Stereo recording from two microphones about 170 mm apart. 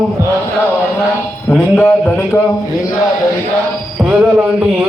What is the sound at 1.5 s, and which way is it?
Mantra, 10° left (ahead or behind).